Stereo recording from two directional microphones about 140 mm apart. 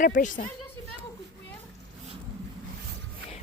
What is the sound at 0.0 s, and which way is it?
Speech, 70° left (ahead or behind).